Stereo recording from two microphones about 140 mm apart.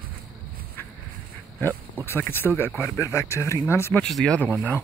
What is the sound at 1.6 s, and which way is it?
Speech, 15° left (ahead or behind).